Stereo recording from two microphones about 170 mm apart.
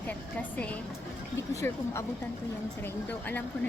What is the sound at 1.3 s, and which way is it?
A woman's voice, 15° left (ahead or behind).